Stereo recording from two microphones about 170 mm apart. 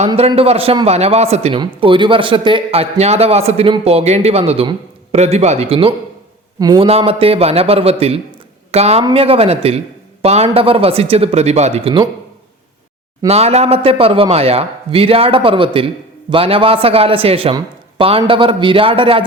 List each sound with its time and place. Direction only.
0.2 s a man's voice: 35° right (ahead or behind)
6.6 s a man's voice: 25° right (ahead or behind)
6.8 s a man's voice: 35° right (ahead or behind)
13.2 s a man's voice: 40° right (ahead or behind)